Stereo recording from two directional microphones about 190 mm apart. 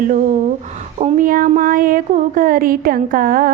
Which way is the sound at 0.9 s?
35° right (ahead or behind).